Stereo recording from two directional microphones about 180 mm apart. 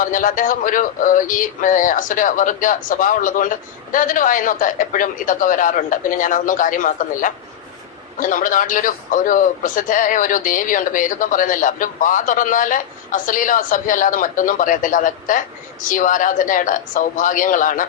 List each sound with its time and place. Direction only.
0.0 s synthetic singing: 50° left (ahead or behind)